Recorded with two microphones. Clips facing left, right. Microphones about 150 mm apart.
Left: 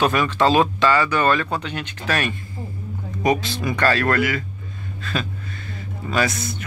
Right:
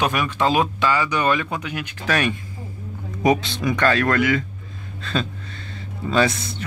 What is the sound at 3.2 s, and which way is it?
Speech, 20° right (ahead or behind).